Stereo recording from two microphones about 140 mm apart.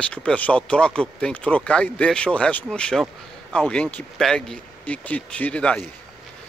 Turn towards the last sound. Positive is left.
turn(degrees=10)  # may be behind; listen again after turning